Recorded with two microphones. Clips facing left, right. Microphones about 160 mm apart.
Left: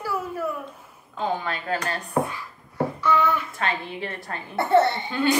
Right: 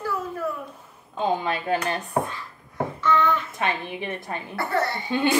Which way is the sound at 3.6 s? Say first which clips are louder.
Right 1 dB; 15° right (ahead or behind).